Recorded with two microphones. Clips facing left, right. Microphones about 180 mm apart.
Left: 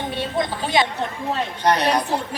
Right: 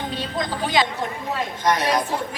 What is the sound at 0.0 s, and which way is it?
Speech, 25° left (ahead or behind).